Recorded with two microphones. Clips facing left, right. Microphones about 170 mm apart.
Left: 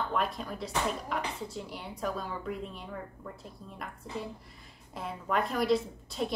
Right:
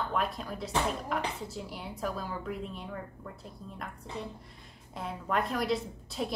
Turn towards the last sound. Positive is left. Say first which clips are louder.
# left 2 dB
turn(degrees=0)  # may be behind; listen again after turning